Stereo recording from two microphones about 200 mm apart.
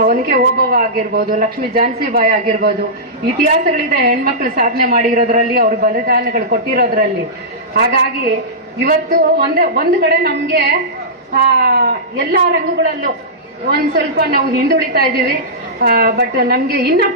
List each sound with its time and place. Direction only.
0.0 s a woman's voice: 45° right (ahead or behind)